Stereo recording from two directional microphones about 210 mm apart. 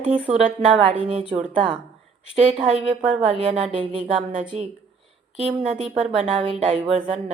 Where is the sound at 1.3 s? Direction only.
25° right (ahead or behind).